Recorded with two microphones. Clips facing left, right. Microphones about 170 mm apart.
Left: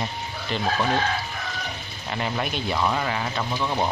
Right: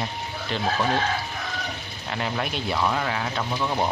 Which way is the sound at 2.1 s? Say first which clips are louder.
Left 1 dB; centre (ahead or behind).